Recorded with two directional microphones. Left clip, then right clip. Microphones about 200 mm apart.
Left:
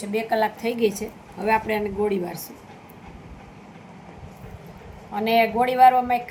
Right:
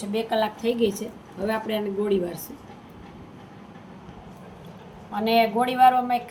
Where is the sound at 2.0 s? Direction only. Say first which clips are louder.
Right 1 dB; 25° left (ahead or behind).